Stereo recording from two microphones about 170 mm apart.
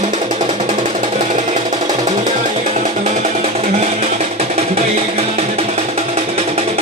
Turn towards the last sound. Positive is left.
turn(degrees=-35)  # may be behind; listen again after turning